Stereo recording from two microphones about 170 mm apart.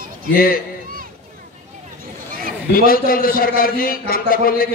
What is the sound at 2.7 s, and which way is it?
A man's voice, 60° left (ahead or behind).